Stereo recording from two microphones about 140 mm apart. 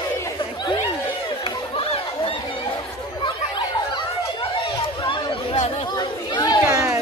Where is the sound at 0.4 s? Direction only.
35° left (ahead or behind).